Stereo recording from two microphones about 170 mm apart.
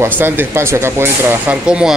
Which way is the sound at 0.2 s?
15° right (ahead or behind).